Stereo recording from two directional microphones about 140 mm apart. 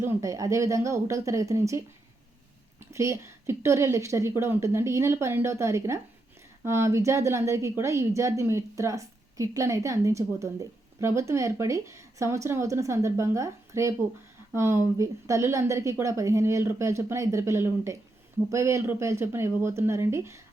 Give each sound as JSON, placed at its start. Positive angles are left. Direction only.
{"t": 0.0, "sound": "a woman's voice", "side_deg": -20}
{"t": 2.9, "sound": "a woman's voice", "side_deg": -20}